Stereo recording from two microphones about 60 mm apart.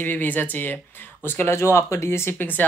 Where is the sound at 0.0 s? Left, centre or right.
Left.